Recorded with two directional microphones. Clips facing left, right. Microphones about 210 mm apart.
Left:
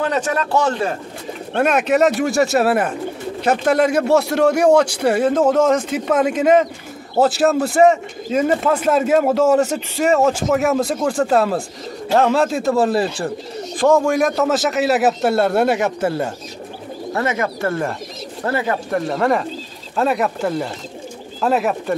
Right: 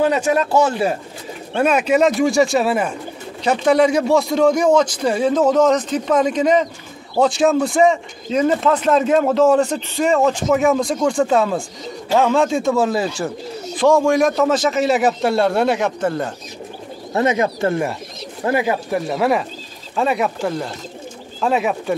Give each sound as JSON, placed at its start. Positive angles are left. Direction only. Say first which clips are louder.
{"t": 0.0, "sound": "a man's voice", "louder": "right 3 dB", "side_deg": -10}
{"t": 3.8, "sound": "a man's voice", "louder": "even", "side_deg": 65}
{"t": 5.1, "sound": "a man's voice", "louder": "even", "side_deg": 5}
{"t": 17.1, "sound": "a man's voice", "louder": "right 4 dB", "side_deg": -20}